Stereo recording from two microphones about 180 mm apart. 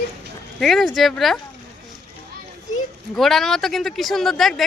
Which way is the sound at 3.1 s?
Centre (ahead or behind).